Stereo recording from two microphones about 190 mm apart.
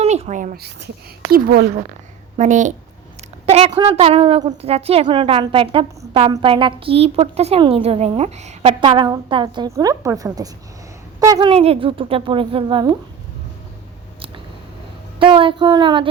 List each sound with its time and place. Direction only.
0.0 s a sound: 35° right (ahead or behind)
1.3 s speech: 55° right (ahead or behind)
2.4 s a woman's voice: 40° right (ahead or behind)
3.7 s a woman's voice: 25° right (ahead or behind)
8.8 s a woman's voice: 25° right (ahead or behind)
11.5 s a woman's voice: 30° right (ahead or behind)
15.2 s a woman's voice: 25° right (ahead or behind)